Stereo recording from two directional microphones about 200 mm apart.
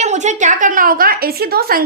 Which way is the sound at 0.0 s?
35° right (ahead or behind).